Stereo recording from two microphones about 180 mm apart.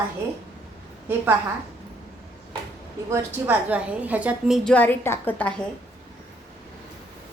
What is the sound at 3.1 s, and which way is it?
A woman's voice, 10° right (ahead or behind).